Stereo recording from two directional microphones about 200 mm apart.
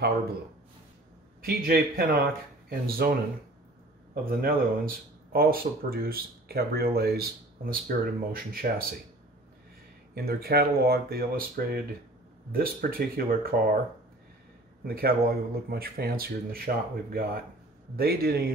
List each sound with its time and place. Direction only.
1.4 s speech: 50° right (ahead or behind)
4.1 s speech: 50° right (ahead or behind)
10.1 s speech: 50° right (ahead or behind)
14.9 s speech: 50° right (ahead or behind)